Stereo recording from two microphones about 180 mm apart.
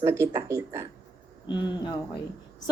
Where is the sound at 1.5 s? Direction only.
25° left (ahead or behind).